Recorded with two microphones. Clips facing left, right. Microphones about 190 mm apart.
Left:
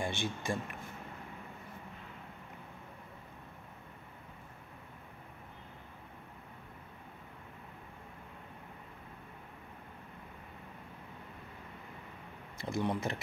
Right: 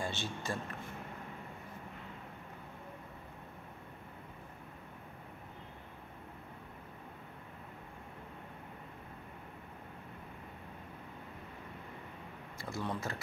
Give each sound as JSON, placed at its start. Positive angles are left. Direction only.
{"t": 0.0, "sound": "speech", "side_deg": 15}
{"t": 12.5, "sound": "speech", "side_deg": 20}